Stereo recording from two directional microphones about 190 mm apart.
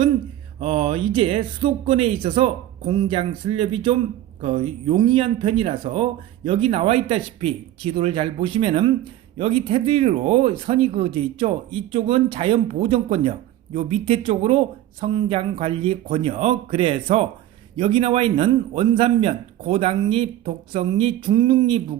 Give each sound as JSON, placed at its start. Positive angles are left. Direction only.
{"t": 0.6, "sound": "speech", "side_deg": -30}